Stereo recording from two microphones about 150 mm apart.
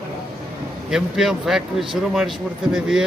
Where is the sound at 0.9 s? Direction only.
5° right (ahead or behind).